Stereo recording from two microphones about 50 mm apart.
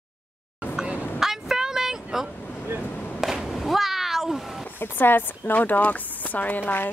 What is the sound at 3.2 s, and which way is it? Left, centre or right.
Cat, centre.